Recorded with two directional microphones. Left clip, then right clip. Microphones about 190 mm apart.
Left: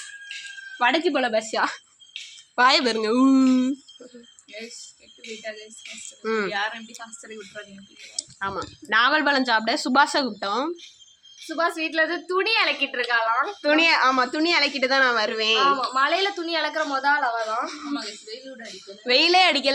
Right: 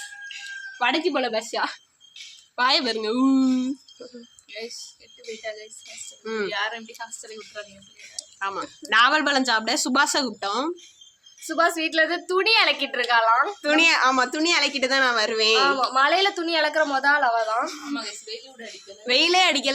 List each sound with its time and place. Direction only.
0.8 s a woman's voice: 25° left (ahead or behind)
6.2 s a woman's voice: 30° left (ahead or behind)
6.5 s speech: 15° left (ahead or behind)
8.1 s a woman's voice: 25° left (ahead or behind)
11.4 s a woman's voice: 35° right (ahead or behind)
11.9 s a woman's voice: 15° right (ahead or behind)
13.6 s a woman's voice: 25° left (ahead or behind)
15.6 s a woman's voice: 30° right (ahead or behind)
17.7 s a woman's voice: 20° left (ahead or behind)